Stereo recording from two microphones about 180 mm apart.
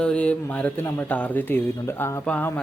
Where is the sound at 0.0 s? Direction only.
5° left (ahead or behind).